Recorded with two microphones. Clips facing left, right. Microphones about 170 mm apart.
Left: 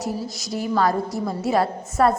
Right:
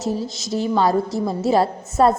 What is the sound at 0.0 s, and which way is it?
A woman's voice, 25° right (ahead or behind).